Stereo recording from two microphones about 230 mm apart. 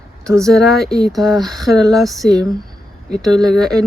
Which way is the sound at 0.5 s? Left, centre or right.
Centre.